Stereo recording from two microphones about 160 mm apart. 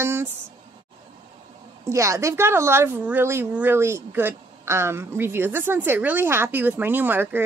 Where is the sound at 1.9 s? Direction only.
20° right (ahead or behind).